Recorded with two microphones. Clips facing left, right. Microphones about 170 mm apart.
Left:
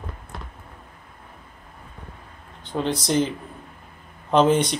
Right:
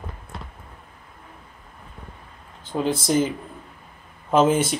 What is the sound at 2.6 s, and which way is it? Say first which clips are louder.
Speech: right 1 dB; 5° right (ahead or behind).